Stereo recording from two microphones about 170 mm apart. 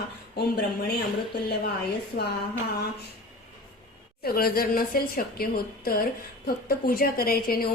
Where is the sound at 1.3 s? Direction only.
75° left (ahead or behind).